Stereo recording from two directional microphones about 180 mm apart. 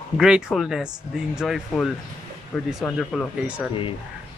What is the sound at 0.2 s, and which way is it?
Speech, centre (ahead or behind).